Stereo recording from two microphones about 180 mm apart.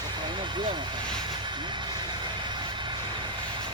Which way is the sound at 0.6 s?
25° right (ahead or behind).